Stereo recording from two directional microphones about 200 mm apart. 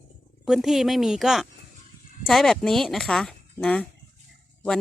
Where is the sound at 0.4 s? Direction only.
Centre (ahead or behind).